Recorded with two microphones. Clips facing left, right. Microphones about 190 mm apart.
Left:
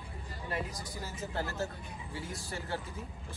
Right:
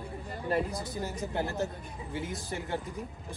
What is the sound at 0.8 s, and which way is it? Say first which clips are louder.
Speech: right 6 dB; 20° right (ahead or behind).